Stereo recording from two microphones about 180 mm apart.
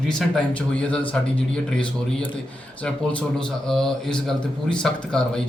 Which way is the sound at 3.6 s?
5° left (ahead or behind).